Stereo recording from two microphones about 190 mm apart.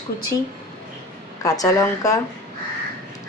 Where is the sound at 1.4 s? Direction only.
20° left (ahead or behind).